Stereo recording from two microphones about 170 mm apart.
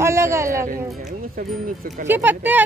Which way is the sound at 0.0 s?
15° right (ahead or behind).